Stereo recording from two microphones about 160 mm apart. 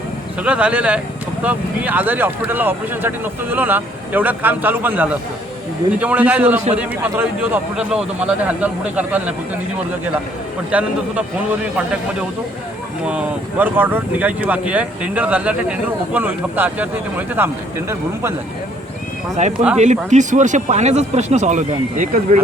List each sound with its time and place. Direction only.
0.4 s speech: 10° right (ahead or behind)
10.7 s speech: 10° right (ahead or behind)
13.1 s speech: 10° right (ahead or behind)
19.4 s speech: 45° right (ahead or behind)